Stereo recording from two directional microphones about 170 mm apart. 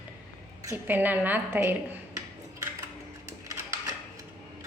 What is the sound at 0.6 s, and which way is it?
A woman's voice, 15° right (ahead or behind).